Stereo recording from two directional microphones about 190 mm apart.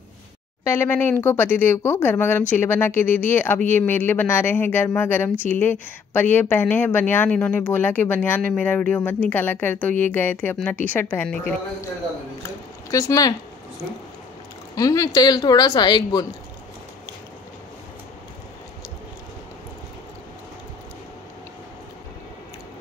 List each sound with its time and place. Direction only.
0.7 s speech: 10° left (ahead or behind)
12.4 s a sound: 15° left (ahead or behind)
14.8 s a woman's voice: 20° left (ahead or behind)